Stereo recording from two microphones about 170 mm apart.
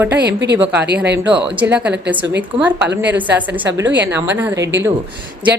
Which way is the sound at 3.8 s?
90° right.